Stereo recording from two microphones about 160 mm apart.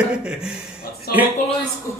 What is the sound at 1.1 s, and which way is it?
Speech, 75° left (ahead or behind).